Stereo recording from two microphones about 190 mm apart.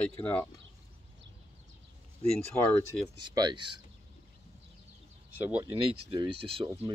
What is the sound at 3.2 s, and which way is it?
Speech, 25° right (ahead or behind).